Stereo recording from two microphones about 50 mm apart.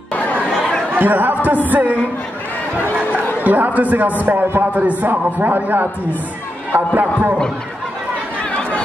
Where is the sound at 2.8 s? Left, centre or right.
Left.